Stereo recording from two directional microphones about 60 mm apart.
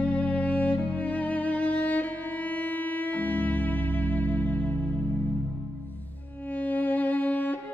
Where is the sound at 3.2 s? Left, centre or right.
Left.